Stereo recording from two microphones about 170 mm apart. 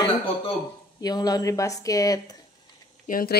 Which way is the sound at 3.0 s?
55° left (ahead or behind).